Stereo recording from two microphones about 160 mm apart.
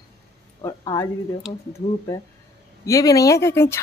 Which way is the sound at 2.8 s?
20° left (ahead or behind).